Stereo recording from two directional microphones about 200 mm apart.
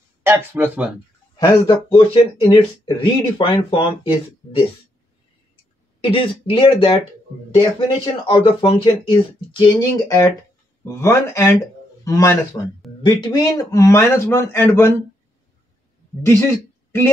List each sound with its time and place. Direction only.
0.2 s speech: 10° right (ahead or behind)
1.4 s speech: 25° left (ahead or behind)
5.9 s a man's voice: 25° left (ahead or behind)
16.2 s a man's voice: 10° left (ahead or behind)